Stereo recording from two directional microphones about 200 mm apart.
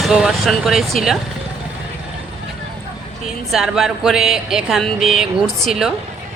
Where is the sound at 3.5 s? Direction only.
Centre (ahead or behind).